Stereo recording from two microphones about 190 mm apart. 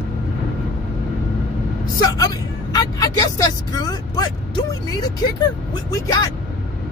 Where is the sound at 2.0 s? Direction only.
20° left (ahead or behind).